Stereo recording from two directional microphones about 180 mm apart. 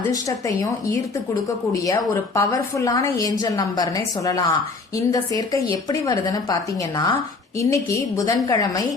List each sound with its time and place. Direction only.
0.1 s a woman's voice: 20° left (ahead or behind)